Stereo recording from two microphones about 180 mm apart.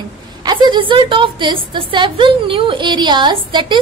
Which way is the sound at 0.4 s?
25° right (ahead or behind).